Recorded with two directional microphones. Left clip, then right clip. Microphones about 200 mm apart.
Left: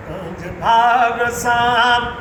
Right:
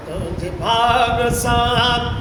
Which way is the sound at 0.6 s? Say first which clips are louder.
Left 3 dB; 15° right (ahead or behind).